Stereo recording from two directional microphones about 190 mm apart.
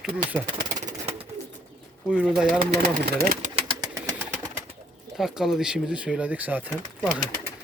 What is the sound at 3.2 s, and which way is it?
Speech, 50° right (ahead or behind).